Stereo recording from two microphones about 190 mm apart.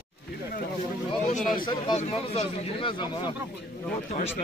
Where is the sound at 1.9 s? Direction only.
35° left (ahead or behind).